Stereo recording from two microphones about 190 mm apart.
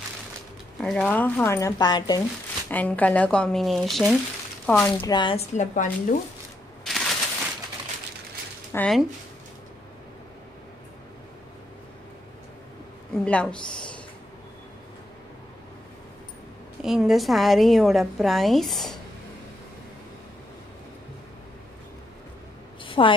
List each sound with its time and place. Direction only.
0.7 s speech: 5° left (ahead or behind); by 2.2 s 20° left (ahead or behind)
2.7 s a woman's voice: 10° left (ahead or behind); by 5.4 s 25° left (ahead or behind)
5.5 s a woman's voice: 40° left (ahead or behind)
6.8 s a sound: centre (ahead or behind)
8.7 s a woman's voice: 5° left (ahead or behind)
13.2 s a woman's voice: 5° left (ahead or behind)
16.8 s a woman's voice: centre (ahead or behind)
22.8 s a sound: 25° left (ahead or behind)